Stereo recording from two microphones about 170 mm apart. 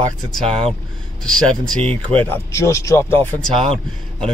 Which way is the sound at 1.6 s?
5° left (ahead or behind).